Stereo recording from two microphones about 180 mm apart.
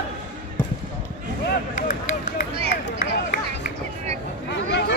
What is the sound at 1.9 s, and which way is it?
Run, 50° left (ahead or behind).